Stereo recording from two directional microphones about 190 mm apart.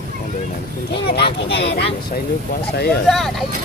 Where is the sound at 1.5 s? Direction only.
60° left (ahead or behind).